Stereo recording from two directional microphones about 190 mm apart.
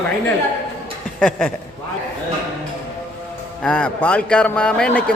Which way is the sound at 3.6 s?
5° left (ahead or behind).